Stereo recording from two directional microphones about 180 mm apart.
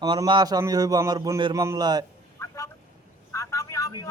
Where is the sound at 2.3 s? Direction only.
15° left (ahead or behind).